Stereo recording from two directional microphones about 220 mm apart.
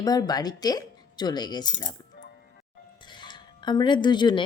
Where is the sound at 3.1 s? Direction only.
20° left (ahead or behind).